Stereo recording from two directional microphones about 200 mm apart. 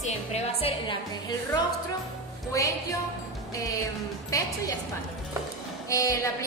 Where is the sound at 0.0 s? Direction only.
30° left (ahead or behind).